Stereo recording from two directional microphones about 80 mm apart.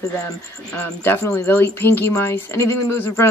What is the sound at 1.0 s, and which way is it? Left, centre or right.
Speech, left.